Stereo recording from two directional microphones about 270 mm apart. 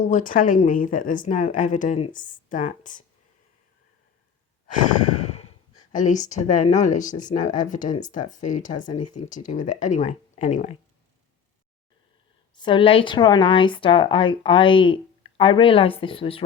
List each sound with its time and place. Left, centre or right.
0.0 s speech: left
5.1 s speech: left
12.5 s speech: centre